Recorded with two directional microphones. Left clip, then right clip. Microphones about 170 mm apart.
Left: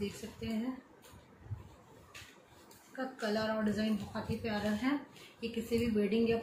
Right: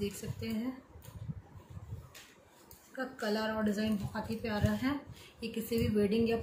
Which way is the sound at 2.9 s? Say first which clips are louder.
Right 1 dB; 60° right (ahead or behind).